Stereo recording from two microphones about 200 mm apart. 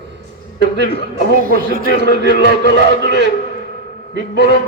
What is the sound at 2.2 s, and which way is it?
Speech, 60° right (ahead or behind).